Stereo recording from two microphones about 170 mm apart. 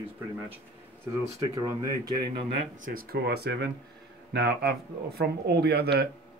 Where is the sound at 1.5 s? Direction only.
20° right (ahead or behind).